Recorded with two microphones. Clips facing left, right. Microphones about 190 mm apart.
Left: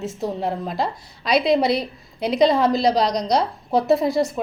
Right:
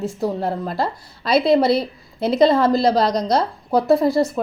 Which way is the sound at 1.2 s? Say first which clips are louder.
Right 2 dB; 15° left (ahead or behind).